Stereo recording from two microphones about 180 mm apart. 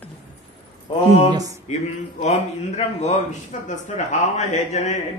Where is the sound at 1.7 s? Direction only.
40° left (ahead or behind).